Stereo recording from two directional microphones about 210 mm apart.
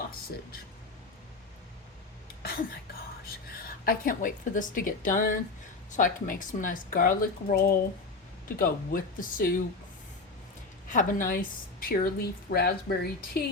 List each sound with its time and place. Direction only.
2.2 s a sound: 45° left (ahead or behind)
3.7 s a woman's voice: 45° left (ahead or behind)
10.8 s a woman's voice: 40° left (ahead or behind)